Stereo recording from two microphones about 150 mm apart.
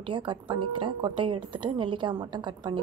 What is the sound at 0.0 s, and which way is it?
Speech, 35° right (ahead or behind).